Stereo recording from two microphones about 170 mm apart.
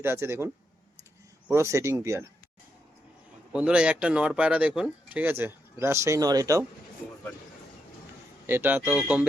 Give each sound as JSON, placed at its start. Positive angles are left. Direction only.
{"t": 0.0, "sound": "speech", "side_deg": -15}
{"t": 3.5, "sound": "speech", "side_deg": -5}
{"t": 8.4, "sound": "speech", "side_deg": -10}